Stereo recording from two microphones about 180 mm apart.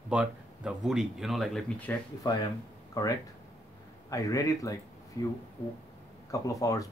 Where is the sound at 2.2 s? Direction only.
20° left (ahead or behind).